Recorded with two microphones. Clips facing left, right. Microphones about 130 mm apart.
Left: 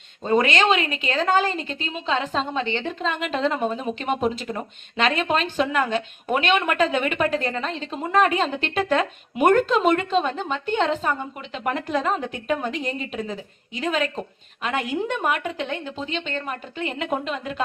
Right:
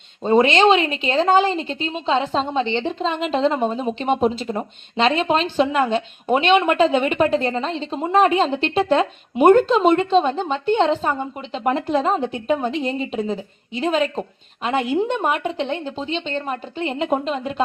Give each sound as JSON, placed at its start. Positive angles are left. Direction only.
{"t": 0.2, "sound": "a woman's voice", "side_deg": -30}